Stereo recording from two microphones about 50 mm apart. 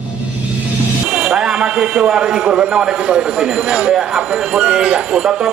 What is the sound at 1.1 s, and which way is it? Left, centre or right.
A man's voice, centre.